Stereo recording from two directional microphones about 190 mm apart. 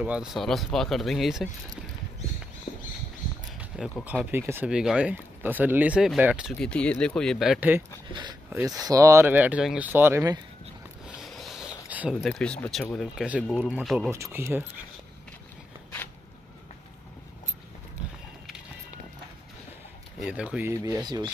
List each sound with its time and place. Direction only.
0.0 s speech: 5° right (ahead or behind)
2.7 s a sound: 35° left (ahead or behind)
3.7 s speech: centre (ahead or behind)
6.6 s speech: 5° left (ahead or behind)
8.1 s speech: 25° right (ahead or behind)
11.1 s speech: centre (ahead or behind)
20.2 s speech: 5° right (ahead or behind); by 21.3 s 20° right (ahead or behind)